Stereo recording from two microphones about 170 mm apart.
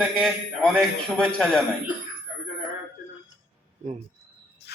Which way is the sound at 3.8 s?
45° right (ahead or behind).